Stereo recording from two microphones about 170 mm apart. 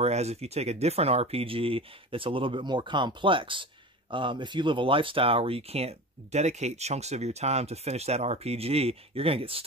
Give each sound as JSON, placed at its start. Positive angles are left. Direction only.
{"t": 0.0, "sound": "speech", "side_deg": -40}